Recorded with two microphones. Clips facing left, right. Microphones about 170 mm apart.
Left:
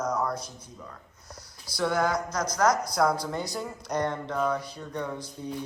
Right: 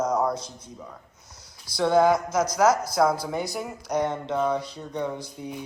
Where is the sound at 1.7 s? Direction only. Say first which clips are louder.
Right 7 dB; 20° right (ahead or behind).